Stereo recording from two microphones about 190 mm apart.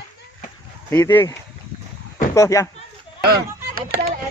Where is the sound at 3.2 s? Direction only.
55° right (ahead or behind).